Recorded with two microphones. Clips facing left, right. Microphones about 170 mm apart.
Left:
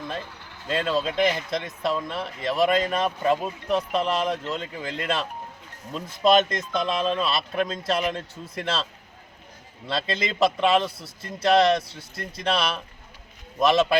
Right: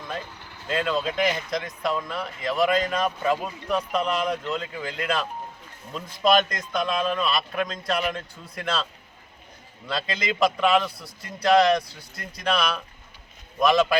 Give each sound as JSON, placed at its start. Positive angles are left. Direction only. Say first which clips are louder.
{"t": 0.7, "sound": "speech", "louder": "left 1 dB", "side_deg": 30}
{"t": 9.8, "sound": "speech", "louder": "left 1 dB", "side_deg": 30}